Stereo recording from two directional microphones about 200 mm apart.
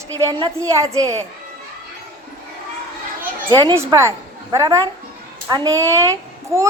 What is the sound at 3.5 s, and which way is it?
A woman's voice, 20° right (ahead or behind).